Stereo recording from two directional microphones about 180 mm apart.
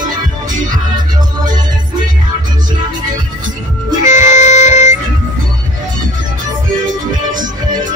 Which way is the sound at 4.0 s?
40° left (ahead or behind).